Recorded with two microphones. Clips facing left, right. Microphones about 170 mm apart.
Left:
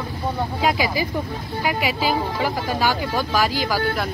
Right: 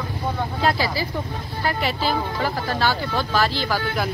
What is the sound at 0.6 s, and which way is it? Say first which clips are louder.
Speech: left 1 dB; 15° left (ahead or behind).